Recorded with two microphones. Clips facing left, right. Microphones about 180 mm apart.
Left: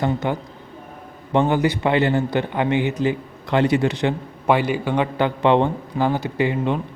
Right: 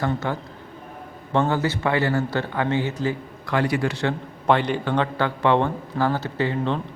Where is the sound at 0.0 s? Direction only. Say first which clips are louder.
Left 3 dB; 15° left (ahead or behind).